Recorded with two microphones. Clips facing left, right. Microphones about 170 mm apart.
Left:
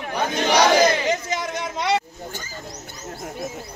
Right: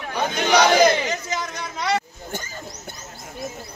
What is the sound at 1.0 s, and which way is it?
Speech, 25° left (ahead or behind).